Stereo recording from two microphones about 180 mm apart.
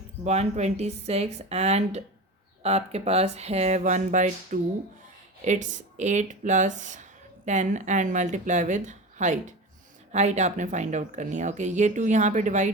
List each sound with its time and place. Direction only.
0.3 s speech: 35° right (ahead or behind)